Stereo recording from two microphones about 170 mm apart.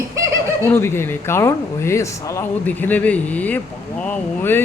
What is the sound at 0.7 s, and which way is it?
Speech, 15° left (ahead or behind).